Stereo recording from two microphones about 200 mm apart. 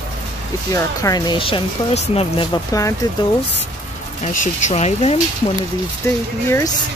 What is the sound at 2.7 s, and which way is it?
Speech, 15° left (ahead or behind).